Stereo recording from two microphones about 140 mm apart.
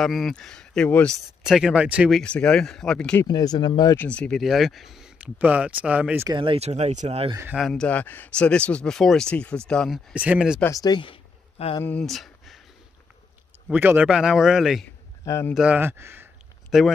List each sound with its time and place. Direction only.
0.0 s speech: centre (ahead or behind)
1.4 s speech: 5° right (ahead or behind)
3.3 s speech: 30° left (ahead or behind)
3.9 s speech: 10° left (ahead or behind); by 6.2 s 10° right (ahead or behind)
6.2 s speech: 35° right (ahead or behind)
7.5 s speech: centre (ahead or behind)
10.1 s speech: 10° right (ahead or behind)
10.6 s speech: 25° left (ahead or behind); by 11.8 s 40° left (ahead or behind)
11.8 s a sound: 5° left (ahead or behind)
13.7 s speech: 10° right (ahead or behind)
15.2 s speech: 20° left (ahead or behind)
15.5 s speech: 10° right (ahead or behind)
16.7 s speech: centre (ahead or behind)